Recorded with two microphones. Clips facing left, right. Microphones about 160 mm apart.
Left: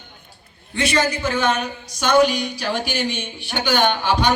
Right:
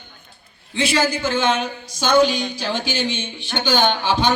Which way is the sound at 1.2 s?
25° right (ahead or behind).